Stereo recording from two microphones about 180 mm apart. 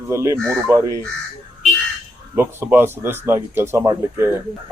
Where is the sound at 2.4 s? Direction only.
15° right (ahead or behind).